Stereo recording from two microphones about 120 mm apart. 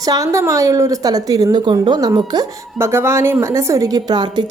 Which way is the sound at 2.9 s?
20° right (ahead or behind).